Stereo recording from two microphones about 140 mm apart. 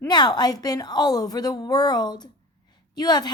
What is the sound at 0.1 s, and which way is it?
Speech, 30° left (ahead or behind).